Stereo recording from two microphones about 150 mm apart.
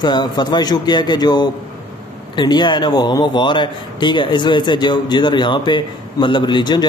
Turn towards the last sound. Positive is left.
turn(degrees=30)  # may be behind; listen again after turning